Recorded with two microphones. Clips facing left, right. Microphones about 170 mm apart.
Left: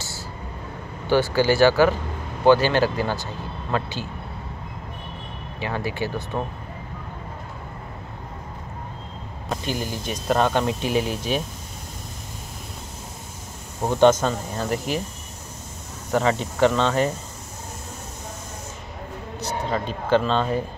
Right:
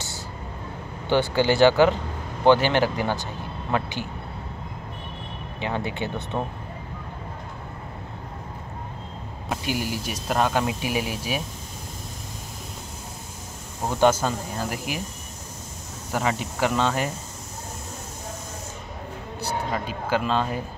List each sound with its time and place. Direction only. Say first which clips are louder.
1.0 s speech: left 2 dB; 20° right (ahead or behind)
5.6 s speech: left 1 dB; 20° right (ahead or behind)
9.5 s speech: even; 10° right (ahead or behind)
13.9 s speech: left 3 dB; 5° right (ahead or behind)
16.1 s speech: left 4 dB; 5° right (ahead or behind)
19.4 s speech: left 2 dB; 10° right (ahead or behind)